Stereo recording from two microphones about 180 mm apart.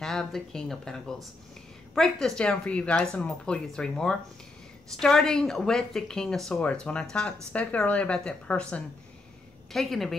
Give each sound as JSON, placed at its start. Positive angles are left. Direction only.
{"t": 0.0, "sound": "speech", "side_deg": 0}